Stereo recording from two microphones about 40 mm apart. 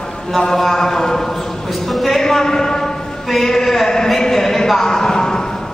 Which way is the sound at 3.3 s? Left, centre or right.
Centre.